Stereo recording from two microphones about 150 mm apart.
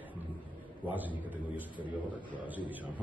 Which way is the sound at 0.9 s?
10° right (ahead or behind).